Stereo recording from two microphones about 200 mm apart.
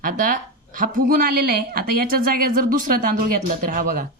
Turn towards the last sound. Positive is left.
turn(degrees=-45)  # may be behind; listen again after turning